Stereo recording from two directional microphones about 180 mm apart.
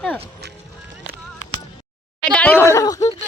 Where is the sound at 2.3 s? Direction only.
10° left (ahead or behind).